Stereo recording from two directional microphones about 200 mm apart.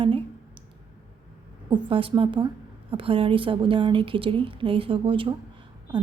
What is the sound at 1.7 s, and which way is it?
A woman's voice, 25° right (ahead or behind).